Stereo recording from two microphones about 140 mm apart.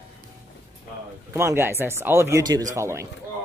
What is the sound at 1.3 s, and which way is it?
Speech, 20° right (ahead or behind).